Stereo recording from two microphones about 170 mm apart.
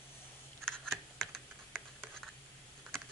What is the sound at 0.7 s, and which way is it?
Typing, 5° left (ahead or behind).